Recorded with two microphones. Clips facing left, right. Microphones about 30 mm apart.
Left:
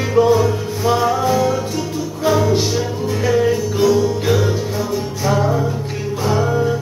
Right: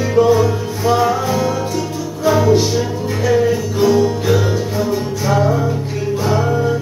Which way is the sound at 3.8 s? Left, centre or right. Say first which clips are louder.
Right 2 dB; centre.